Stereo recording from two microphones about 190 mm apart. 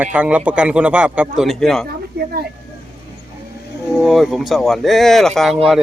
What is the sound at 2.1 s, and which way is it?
Speech, 60° right (ahead or behind).